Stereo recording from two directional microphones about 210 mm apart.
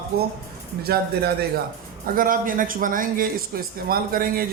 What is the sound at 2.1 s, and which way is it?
A man's voice, 40° right (ahead or behind).